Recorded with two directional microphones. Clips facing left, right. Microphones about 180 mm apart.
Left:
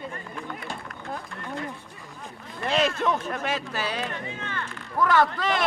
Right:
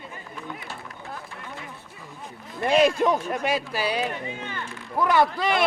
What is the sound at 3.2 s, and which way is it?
Speech, 10° right (ahead or behind).